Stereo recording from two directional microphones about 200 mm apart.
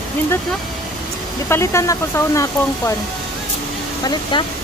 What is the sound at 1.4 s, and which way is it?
Speech, 15° left (ahead or behind).